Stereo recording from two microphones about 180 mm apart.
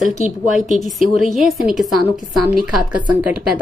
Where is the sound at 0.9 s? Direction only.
Centre (ahead or behind).